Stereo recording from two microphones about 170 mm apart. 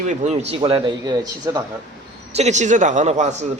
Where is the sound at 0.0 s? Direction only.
45° right (ahead or behind); by 1.6 s 20° right (ahead or behind).